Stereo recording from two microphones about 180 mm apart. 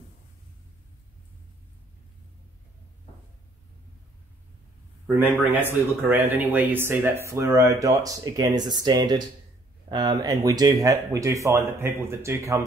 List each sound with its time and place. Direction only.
5.0 s speech: 10° right (ahead or behind)